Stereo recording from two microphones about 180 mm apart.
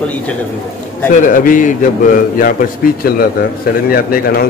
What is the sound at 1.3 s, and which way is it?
A man's voice, 50° left (ahead or behind).